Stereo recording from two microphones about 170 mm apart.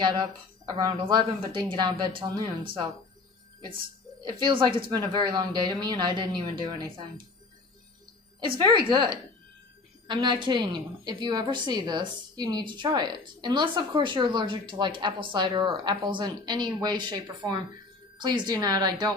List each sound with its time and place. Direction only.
0.0 s a woman's voice: 25° right (ahead or behind)
8.5 s a woman's voice: 25° right (ahead or behind)